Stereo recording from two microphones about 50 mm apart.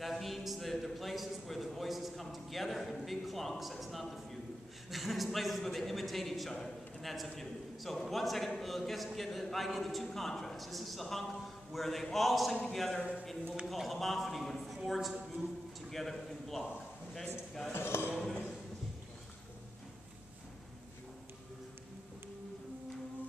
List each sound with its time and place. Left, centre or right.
0.0 s a sound: centre
3.8 s a man's voice: centre
17.7 s speech: left